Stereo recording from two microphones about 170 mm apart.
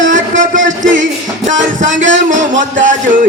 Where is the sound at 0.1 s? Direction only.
50° right (ahead or behind).